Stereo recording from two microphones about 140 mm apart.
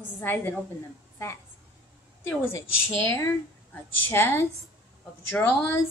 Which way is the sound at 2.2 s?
20° left (ahead or behind).